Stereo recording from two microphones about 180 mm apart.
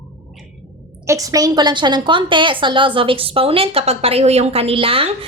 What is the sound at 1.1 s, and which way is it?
A woman's voice, 20° right (ahead or behind).